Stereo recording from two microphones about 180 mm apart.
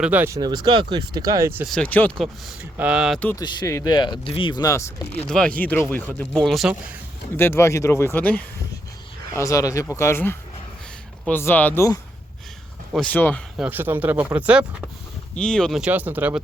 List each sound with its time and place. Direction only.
0.0 s speech: 10° right (ahead or behind)
0.3 s speech: 20° right (ahead or behind)
1.6 s speech: 5° left (ahead or behind)
3.2 s speech: 10° left (ahead or behind)
3.4 s speech: 25° left (ahead or behind)
5.3 s speech: 5° left (ahead or behind)
7.3 s speech: 15° left (ahead or behind)
13.6 s speech: 10° right (ahead or behind)
15.4 s speech: 5° left (ahead or behind)